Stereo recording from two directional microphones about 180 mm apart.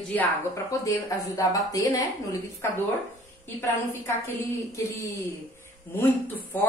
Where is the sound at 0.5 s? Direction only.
20° left (ahead or behind).